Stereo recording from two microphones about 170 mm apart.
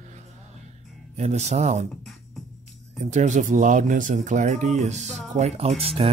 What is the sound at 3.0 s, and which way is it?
Speech, 45° right (ahead or behind).